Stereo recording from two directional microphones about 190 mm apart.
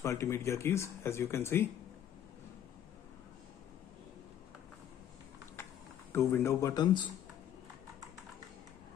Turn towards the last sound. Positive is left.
turn(degrees=25)  # may be behind; listen again after turning